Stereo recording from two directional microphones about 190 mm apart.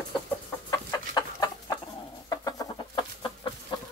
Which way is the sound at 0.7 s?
20° left (ahead or behind).